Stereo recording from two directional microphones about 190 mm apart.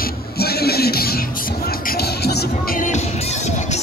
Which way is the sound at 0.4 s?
55° left (ahead or behind).